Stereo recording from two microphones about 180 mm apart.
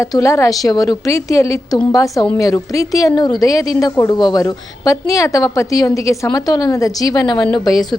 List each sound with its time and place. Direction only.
0.0 s a woman's voice: 15° left (ahead or behind)